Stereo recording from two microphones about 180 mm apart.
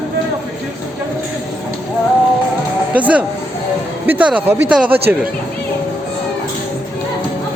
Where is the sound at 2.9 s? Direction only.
10° right (ahead or behind).